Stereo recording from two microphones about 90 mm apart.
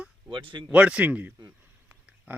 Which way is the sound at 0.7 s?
15° right (ahead or behind).